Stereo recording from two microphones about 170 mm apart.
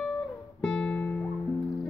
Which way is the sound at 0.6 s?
5° left (ahead or behind).